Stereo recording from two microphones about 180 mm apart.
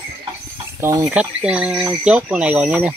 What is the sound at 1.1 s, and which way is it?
Speech, 5° right (ahead or behind).